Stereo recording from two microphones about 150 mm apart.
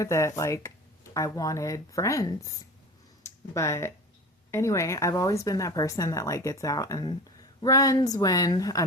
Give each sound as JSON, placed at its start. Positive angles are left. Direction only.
{"t": 0.0, "sound": "speech", "side_deg": 20}